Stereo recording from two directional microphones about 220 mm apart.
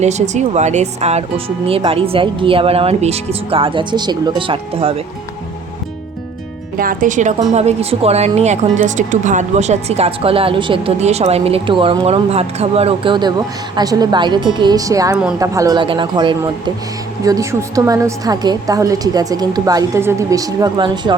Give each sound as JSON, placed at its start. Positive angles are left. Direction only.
{"t": 0.0, "sound": "a woman's voice", "side_deg": -30}
{"t": 6.7, "sound": "a woman's voice", "side_deg": -40}